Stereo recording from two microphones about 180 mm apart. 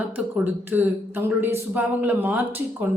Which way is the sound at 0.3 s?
10° right (ahead or behind).